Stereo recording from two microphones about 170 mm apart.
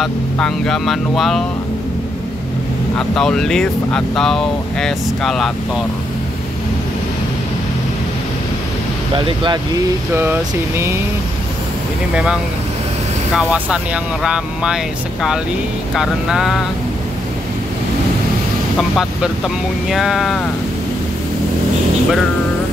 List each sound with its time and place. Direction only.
0.0 s speech: centre (ahead or behind)
3.0 s speech: 5° left (ahead or behind)
9.1 s speech: 30° right (ahead or behind)
10.1 s speech: 10° right (ahead or behind)
13.4 s speech: 5° right (ahead or behind)
15.9 s speech: 5° right (ahead or behind)
18.8 s speech: centre (ahead or behind)